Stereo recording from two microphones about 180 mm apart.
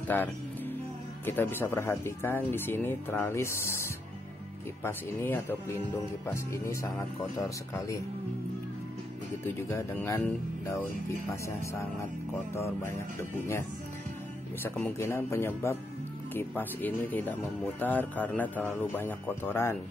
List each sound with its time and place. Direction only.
1.2 s speech: 10° left (ahead or behind)
9.4 s speech: 15° left (ahead or behind)
14.6 s speech: 10° left (ahead or behind)